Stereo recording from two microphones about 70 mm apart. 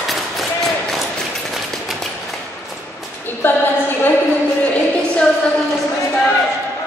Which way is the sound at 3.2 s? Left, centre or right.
Left.